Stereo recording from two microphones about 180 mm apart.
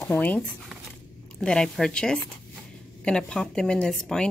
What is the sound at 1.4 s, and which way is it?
Speech, 5° left (ahead or behind).